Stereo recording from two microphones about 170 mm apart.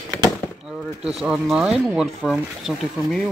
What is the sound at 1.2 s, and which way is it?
Speech, 5° right (ahead or behind).